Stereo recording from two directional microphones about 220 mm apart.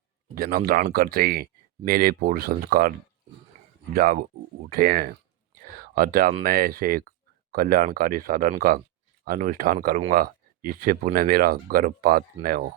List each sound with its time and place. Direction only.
0.3 s speech: 40° right (ahead or behind)
3.9 s speech: 40° right (ahead or behind)
5.5 s a sound: 40° right (ahead or behind)
6.4 s speech: 40° right (ahead or behind)